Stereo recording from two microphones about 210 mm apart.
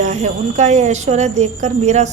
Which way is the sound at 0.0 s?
35° right (ahead or behind).